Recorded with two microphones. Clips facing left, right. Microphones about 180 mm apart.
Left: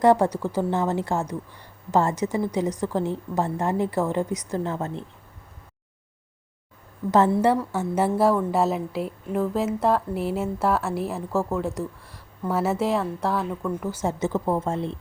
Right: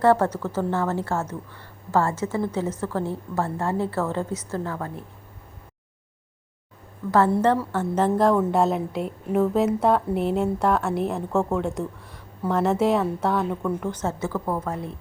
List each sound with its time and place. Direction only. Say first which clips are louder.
0.0 s a woman's voice: left 1 dB; 15° left (ahead or behind)
7.3 s a woman's voice: even; 10° left (ahead or behind); by 14.9 s 25° left (ahead or behind)